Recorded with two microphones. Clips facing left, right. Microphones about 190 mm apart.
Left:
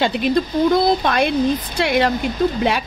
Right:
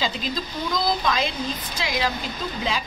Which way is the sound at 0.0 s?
65° left (ahead or behind).